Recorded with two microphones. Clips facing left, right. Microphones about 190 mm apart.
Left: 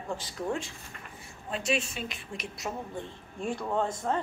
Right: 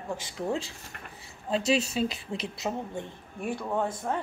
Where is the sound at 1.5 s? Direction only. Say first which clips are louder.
Right 5 dB; 30° right (ahead or behind).